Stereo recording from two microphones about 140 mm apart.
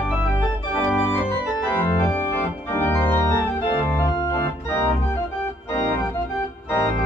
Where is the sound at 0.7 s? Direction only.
10° left (ahead or behind).